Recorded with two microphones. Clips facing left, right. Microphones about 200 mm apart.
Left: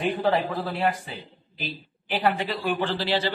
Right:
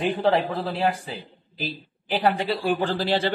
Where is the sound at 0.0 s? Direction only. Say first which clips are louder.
Right 2 dB; 30° right (ahead or behind).